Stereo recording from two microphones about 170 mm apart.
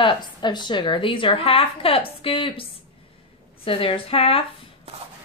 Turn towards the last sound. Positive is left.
turn(degrees=35)  # may be behind; listen again after turning